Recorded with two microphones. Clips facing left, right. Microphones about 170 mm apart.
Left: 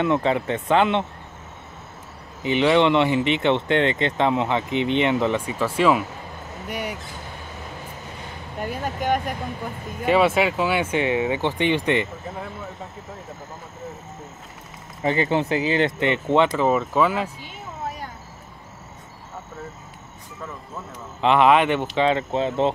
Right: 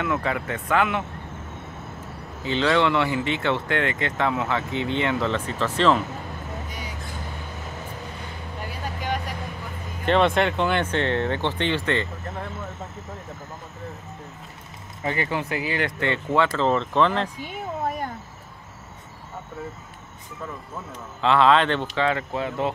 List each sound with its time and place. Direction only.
0.0 s speech: 25° left (ahead or behind)
2.4 s speech: 20° left (ahead or behind)
6.7 s vehicle: 65° left (ahead or behind)
8.6 s speech: 50° left (ahead or behind)
10.0 s speech: 5° left (ahead or behind)
15.0 s speech: 25° left (ahead or behind); by 17.3 s 5° left (ahead or behind)
17.8 s a sound: 55° right (ahead or behind)
21.2 s speech: 15° left (ahead or behind)